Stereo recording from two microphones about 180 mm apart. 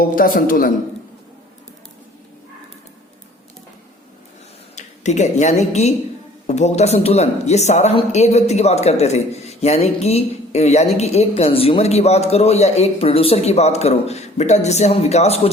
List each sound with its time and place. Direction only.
0.0 s a man's voice: 50° left (ahead or behind)
4.7 s speech: 40° left (ahead or behind)